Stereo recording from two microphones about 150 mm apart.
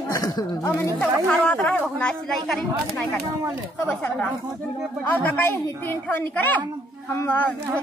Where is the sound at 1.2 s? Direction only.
5° left (ahead or behind).